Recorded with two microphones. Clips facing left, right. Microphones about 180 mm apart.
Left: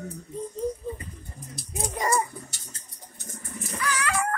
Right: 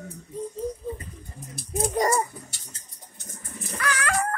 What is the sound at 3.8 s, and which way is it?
Cat, 60° right (ahead or behind).